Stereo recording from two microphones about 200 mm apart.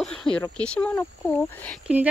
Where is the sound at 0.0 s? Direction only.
5° left (ahead or behind).